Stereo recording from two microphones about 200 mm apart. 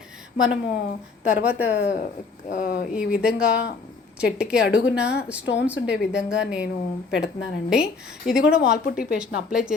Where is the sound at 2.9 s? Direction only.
5° right (ahead or behind).